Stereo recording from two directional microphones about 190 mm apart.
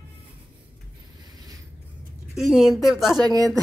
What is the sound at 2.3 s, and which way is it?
Speech, centre (ahead or behind).